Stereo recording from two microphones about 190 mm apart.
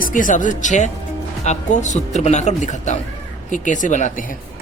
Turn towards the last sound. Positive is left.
turn(degrees=40)  # may be behind; listen again after turning